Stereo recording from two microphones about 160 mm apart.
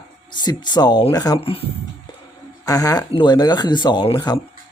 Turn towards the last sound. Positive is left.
turn(degrees=25)  # may be behind; listen again after turning